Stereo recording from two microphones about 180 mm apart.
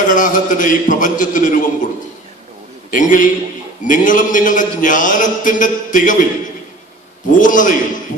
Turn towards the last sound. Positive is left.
turn(degrees=45)  # may be behind; listen again after turning